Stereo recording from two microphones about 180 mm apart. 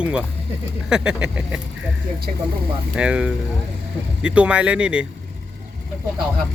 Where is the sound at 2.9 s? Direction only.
5° right (ahead or behind).